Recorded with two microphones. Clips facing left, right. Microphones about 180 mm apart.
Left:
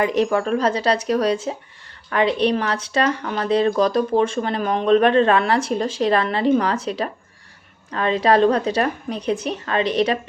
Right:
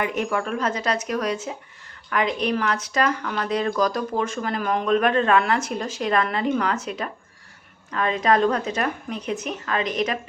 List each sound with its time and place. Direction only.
0.0 s a woman's voice: 35° left (ahead or behind)